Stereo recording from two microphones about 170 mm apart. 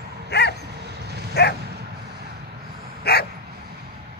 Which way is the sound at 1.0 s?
75° right (ahead or behind).